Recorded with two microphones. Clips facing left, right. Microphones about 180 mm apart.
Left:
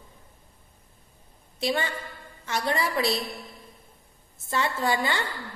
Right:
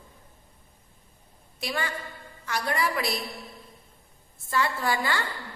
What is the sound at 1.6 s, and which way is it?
A woman's voice, 25° left (ahead or behind).